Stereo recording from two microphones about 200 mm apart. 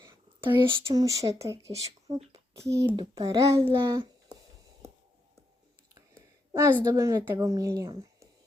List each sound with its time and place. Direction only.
0.7 s a child's voice: 20° right (ahead or behind)
5.9 s a sound: 15° right (ahead or behind)
6.8 s speech: 15° right (ahead or behind)